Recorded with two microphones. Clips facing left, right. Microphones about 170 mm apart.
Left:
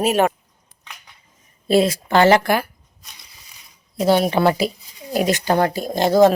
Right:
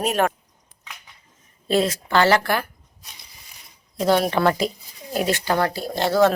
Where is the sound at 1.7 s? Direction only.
10° left (ahead or behind).